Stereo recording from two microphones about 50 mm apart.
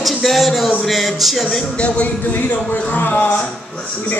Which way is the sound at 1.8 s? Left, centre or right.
Left.